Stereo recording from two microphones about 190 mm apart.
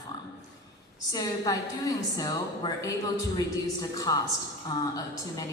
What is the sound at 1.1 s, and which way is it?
A woman's voice, 20° left (ahead or behind).